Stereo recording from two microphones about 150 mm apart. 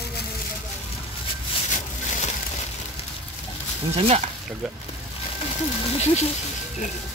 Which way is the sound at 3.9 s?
45° right (ahead or behind).